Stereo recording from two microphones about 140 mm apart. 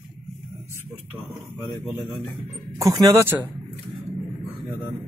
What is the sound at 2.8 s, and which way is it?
Speech, 25° right (ahead or behind).